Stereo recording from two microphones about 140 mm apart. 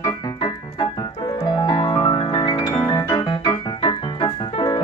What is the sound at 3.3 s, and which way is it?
Keyboard, 40° left (ahead or behind).